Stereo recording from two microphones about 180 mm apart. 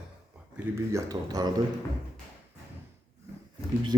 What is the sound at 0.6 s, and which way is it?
Speech, 20° right (ahead or behind).